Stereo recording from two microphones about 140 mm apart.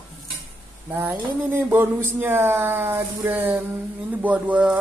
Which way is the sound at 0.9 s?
15° right (ahead or behind).